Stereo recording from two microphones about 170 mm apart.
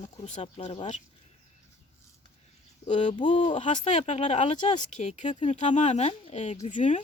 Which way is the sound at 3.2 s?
45° left (ahead or behind).